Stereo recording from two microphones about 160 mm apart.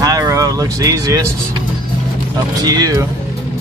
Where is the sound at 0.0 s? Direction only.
20° right (ahead or behind).